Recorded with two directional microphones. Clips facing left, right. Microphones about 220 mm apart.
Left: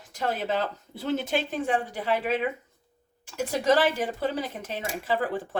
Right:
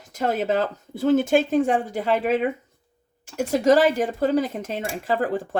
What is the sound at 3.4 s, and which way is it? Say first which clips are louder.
Speech: right 5 dB; 45° right (ahead or behind).